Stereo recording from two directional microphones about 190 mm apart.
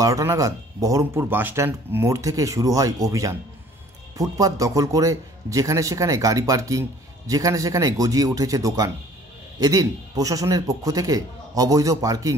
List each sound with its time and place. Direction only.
0.0 s a man's voice: 15° right (ahead or behind)